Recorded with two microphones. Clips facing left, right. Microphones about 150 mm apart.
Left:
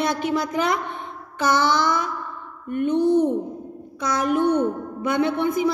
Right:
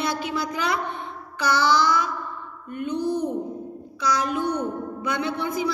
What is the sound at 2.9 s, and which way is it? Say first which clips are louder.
Speech: left 7 dB; 25° left (ahead or behind).